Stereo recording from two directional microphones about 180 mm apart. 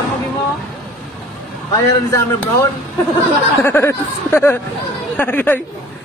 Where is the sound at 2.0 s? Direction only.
15° left (ahead or behind).